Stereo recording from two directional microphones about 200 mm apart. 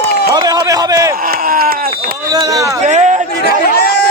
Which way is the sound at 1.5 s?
45° right (ahead or behind).